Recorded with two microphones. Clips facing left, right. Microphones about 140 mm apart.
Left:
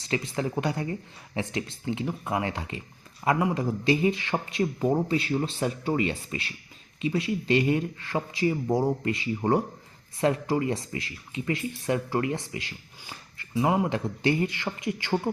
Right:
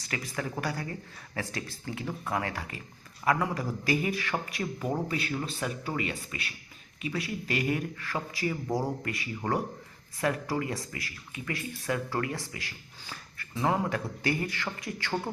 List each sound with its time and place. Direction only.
0.0 s speech: 25° left (ahead or behind)